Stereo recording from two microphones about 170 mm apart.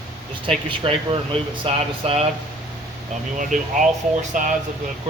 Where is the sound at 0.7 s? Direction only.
30° right (ahead or behind).